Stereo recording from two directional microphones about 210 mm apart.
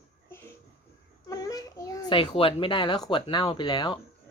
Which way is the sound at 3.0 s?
20° left (ahead or behind).